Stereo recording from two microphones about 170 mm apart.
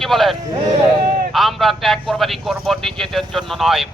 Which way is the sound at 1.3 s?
Centre (ahead or behind).